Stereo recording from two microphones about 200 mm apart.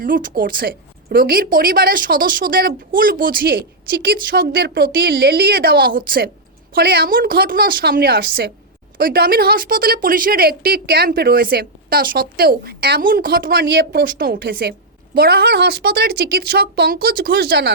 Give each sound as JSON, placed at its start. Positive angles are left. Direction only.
{"t": 0.0, "sound": "speech", "side_deg": -45}